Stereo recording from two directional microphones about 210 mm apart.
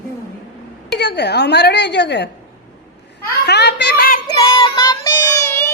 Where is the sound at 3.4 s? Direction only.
55° left (ahead or behind).